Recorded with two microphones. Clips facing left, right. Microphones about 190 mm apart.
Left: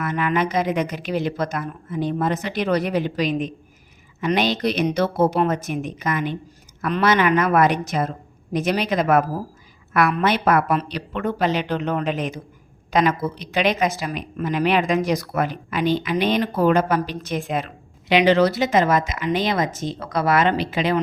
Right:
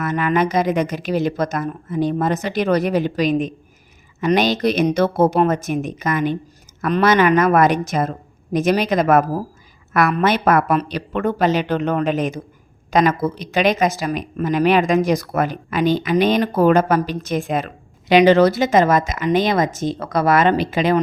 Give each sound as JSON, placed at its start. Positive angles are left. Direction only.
{"t": 0.0, "sound": "speech", "side_deg": -40}